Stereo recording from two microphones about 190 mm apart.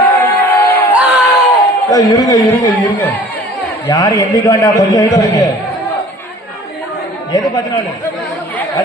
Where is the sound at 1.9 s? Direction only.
20° left (ahead or behind).